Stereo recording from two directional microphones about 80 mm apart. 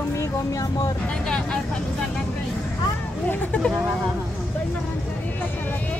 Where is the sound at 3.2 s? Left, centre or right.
Centre.